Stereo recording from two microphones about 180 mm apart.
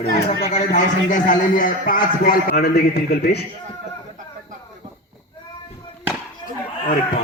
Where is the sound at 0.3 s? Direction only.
40° left (ahead or behind); by 3.4 s 60° left (ahead or behind).